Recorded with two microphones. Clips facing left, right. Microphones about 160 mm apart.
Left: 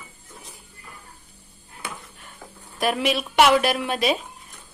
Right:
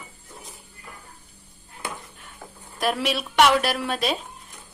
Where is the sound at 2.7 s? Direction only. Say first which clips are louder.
Left 2 dB; centre (ahead or behind).